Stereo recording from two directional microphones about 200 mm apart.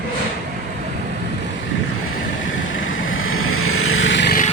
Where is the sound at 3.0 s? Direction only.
90° left; by 4.3 s 65° left (ahead or behind).